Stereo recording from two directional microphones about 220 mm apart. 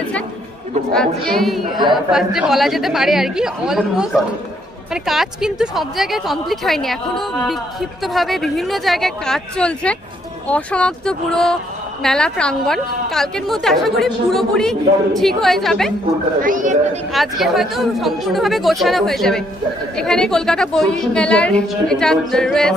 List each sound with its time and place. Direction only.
0.9 s a woman's voice: centre (ahead or behind)
16.3 s speech: 35° right (ahead or behind)
17.1 s a woman's voice: centre (ahead or behind)